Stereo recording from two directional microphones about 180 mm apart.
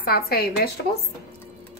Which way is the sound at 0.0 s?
55° left (ahead or behind).